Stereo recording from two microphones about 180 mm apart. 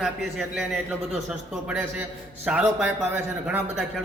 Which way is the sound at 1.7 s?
10° right (ahead or behind).